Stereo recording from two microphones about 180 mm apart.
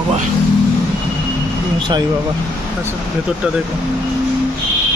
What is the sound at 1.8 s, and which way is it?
Speech, 25° right (ahead or behind).